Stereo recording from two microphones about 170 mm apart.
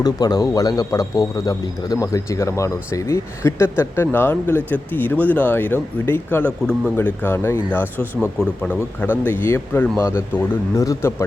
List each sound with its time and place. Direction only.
0.0 s speech: 25° left (ahead or behind)